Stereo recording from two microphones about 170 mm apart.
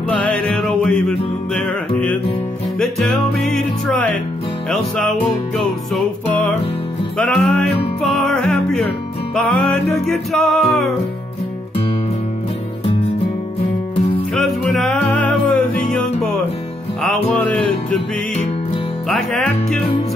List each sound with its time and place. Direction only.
0.2 s music: 5° left (ahead or behind)
7.2 s music: 5° left (ahead or behind)
13.9 s music: 30° left (ahead or behind)
14.3 s music: centre (ahead or behind)
19.0 s music: centre (ahead or behind)